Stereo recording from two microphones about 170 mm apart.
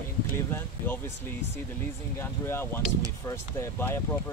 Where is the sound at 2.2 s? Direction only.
15° left (ahead or behind).